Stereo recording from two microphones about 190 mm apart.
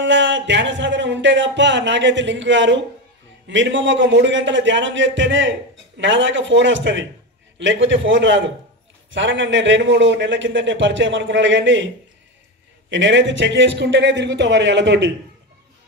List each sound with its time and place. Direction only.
0.0 s a man's voice: 70° right (ahead or behind)
12.9 s a man's voice: 70° right (ahead or behind)